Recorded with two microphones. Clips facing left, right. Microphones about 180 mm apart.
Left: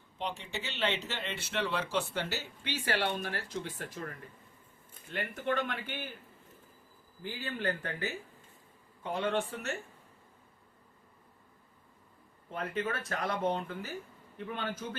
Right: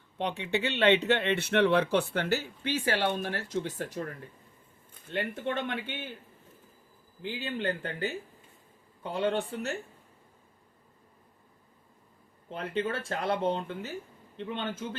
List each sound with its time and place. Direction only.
0.2 s speech: 65° right (ahead or behind); by 4.0 s 40° right (ahead or behind)
5.1 s speech: 25° right (ahead or behind)
7.2 s a man's voice: 20° right (ahead or behind)
12.5 s speech: 30° right (ahead or behind)